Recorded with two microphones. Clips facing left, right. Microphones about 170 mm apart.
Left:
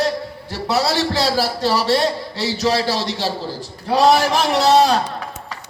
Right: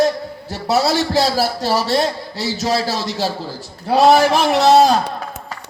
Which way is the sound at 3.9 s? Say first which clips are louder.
Right 3 dB; 35° right (ahead or behind).